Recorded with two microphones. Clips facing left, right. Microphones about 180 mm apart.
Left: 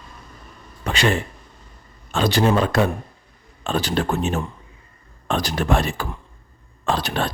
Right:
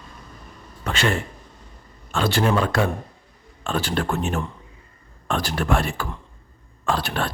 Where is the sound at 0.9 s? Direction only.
15° left (ahead or behind).